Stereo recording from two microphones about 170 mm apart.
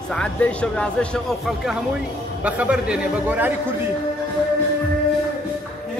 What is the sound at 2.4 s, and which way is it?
A man's voice, 10° right (ahead or behind).